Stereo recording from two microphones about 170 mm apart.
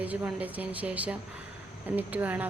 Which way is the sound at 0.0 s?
10° right (ahead or behind).